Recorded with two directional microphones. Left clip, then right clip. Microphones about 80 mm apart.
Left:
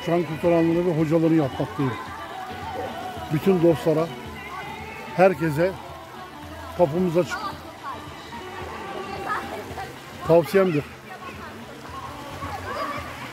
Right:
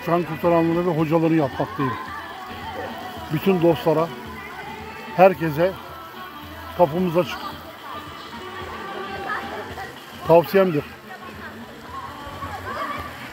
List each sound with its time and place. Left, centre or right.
0.0 s speech: centre
2.7 s a sound: centre
5.1 s speech: centre
6.8 s speech: centre
8.9 s music: centre
10.2 s speech: centre